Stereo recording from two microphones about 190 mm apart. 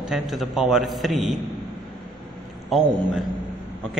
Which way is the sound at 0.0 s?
Centre (ahead or behind).